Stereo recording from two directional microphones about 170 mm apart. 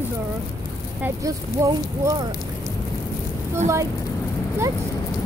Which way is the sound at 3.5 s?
15° right (ahead or behind).